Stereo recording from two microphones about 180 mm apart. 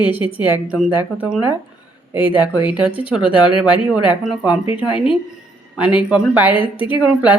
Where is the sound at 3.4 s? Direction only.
25° left (ahead or behind).